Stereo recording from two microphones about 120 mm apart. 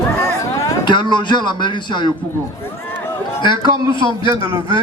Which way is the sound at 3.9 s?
45° left (ahead or behind).